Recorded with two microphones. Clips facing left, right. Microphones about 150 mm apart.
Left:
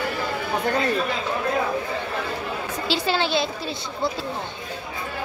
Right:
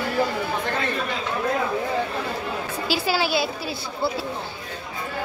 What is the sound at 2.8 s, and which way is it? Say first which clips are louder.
Speech: even; 5° right (ahead or behind).